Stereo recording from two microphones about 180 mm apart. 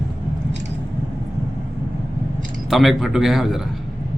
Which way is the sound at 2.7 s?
Centre (ahead or behind).